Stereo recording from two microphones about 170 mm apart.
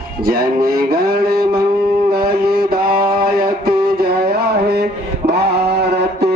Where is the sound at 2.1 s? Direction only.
65° right (ahead or behind).